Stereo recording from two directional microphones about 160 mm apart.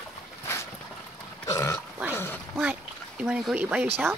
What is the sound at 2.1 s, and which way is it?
Quack, 15° left (ahead or behind).